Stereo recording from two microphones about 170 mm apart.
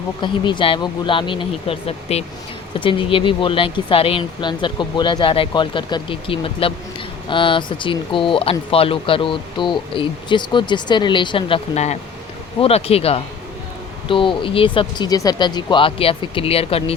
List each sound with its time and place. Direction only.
0.2 s speech: 30° left (ahead or behind)